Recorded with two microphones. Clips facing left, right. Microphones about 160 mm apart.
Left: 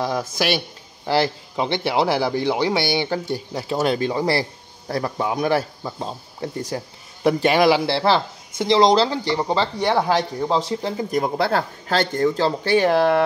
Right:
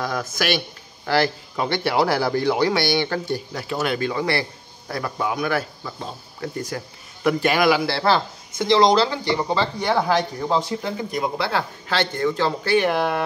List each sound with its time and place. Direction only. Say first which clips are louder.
0.0 s speech: left 2 dB; 25° left (ahead or behind)